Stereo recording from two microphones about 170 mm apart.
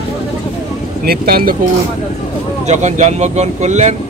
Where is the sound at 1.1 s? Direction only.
60° right (ahead or behind).